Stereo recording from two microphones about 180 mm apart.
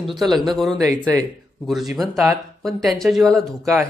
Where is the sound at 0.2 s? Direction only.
Centre (ahead or behind).